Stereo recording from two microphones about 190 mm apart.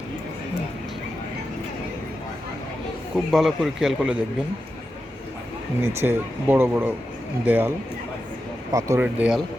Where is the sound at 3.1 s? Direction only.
Centre (ahead or behind).